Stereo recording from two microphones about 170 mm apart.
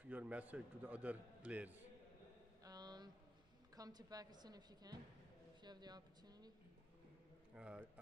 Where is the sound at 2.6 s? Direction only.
25° right (ahead or behind).